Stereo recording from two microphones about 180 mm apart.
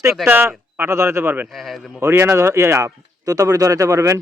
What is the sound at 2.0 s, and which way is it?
Speech, 15° right (ahead or behind).